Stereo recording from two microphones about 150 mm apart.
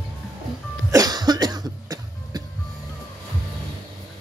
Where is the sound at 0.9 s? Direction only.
25° right (ahead or behind).